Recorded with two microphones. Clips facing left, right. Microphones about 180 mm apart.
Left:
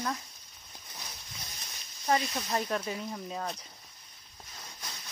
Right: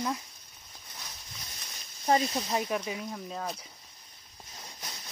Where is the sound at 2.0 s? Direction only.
30° right (ahead or behind).